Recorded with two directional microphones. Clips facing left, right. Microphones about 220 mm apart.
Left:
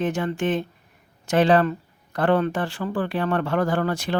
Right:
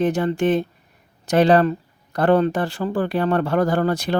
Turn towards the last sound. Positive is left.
turn(degrees=-40)  # may be behind; listen again after turning